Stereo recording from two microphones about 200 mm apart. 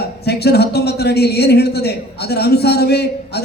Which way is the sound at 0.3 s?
55° left (ahead or behind).